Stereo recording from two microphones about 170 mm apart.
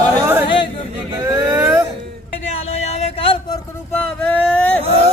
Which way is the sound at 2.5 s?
35° left (ahead or behind).